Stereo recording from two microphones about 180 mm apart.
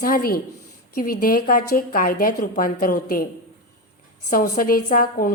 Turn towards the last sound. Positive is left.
turn(degrees=55)  # may be behind; listen again after turning